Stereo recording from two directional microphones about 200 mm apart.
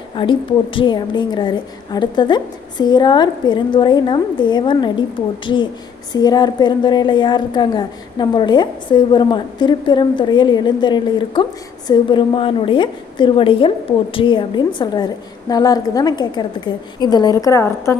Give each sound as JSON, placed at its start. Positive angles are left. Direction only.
{"t": 0.1, "sound": "a woman's voice", "side_deg": 25}